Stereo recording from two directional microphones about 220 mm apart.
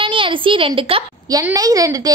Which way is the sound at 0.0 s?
25° right (ahead or behind).